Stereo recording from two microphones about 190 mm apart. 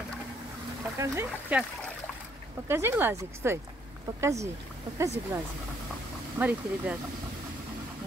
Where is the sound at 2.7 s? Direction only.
15° right (ahead or behind).